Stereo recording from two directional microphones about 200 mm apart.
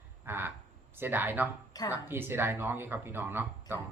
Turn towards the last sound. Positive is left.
turn(degrees=-10)  # may be behind; listen again after turning